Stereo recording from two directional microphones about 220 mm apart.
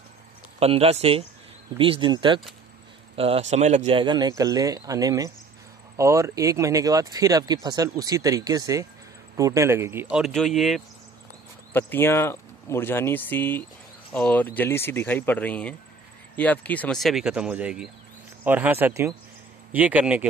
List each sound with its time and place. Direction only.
0.6 s speech: 25° right (ahead or behind); by 20.2 s 5° right (ahead or behind)